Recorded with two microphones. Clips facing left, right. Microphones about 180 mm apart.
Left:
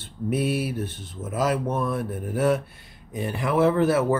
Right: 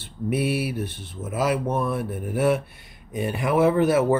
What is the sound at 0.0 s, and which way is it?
Speech, 10° right (ahead or behind).